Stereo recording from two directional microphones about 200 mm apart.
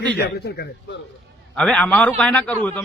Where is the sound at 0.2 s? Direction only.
55° left (ahead or behind).